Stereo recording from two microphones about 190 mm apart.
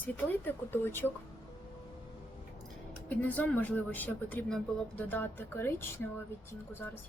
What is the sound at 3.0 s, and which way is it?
Speech, 10° left (ahead or behind).